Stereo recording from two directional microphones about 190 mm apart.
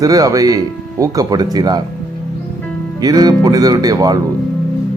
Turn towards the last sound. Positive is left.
turn(degrees=-20)  # may be behind; listen again after turning